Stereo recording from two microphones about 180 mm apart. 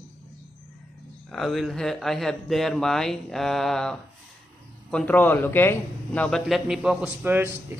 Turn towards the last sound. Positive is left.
turn(degrees=-15)  # may be behind; listen again after turning